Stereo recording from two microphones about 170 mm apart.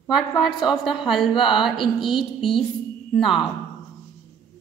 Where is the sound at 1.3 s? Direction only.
30° left (ahead or behind).